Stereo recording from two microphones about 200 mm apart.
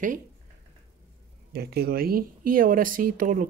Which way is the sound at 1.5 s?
50° right (ahead or behind).